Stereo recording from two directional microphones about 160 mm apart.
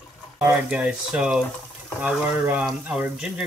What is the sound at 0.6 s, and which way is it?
Speech, 5° right (ahead or behind).